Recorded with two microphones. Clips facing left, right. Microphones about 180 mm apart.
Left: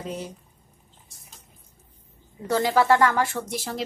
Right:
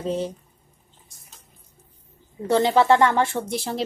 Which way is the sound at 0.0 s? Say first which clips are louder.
Right 7 dB; 30° right (ahead or behind).